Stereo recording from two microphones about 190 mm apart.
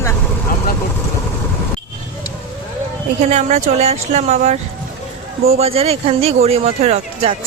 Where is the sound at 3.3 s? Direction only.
35° right (ahead or behind).